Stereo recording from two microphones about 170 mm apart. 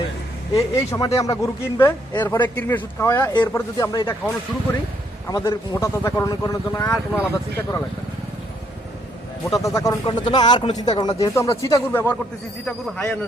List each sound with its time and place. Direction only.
0.5 s speech: 20° left (ahead or behind)
5.3 s speech: 20° left (ahead or behind)
9.6 s speech: 20° left (ahead or behind)